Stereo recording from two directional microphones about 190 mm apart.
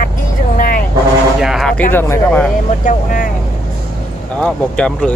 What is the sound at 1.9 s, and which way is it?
Speech, 10° left (ahead or behind).